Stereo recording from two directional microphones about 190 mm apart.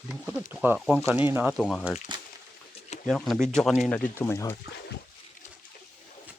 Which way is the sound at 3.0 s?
Centre (ahead or behind).